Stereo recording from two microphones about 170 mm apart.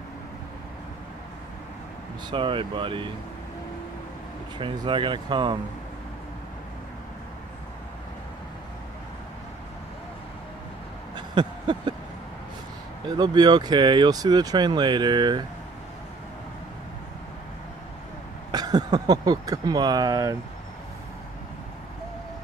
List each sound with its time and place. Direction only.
2.3 s speech: 30° right (ahead or behind)
4.6 s speech: 30° right (ahead or behind)
11.1 s a sound: 25° right (ahead or behind)
13.2 s speech: 25° right (ahead or behind)
18.5 s speech: 25° right (ahead or behind)